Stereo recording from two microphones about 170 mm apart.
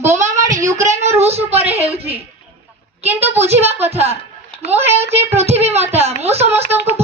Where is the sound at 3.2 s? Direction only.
40° right (ahead or behind).